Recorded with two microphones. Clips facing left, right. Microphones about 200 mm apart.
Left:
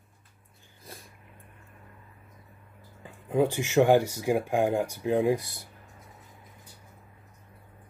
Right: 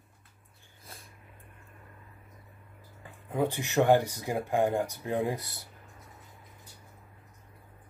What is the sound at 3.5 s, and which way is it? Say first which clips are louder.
Speech: left 4 dB; 90° left.